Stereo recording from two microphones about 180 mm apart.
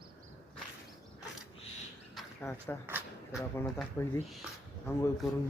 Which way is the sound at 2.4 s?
10° left (ahead or behind).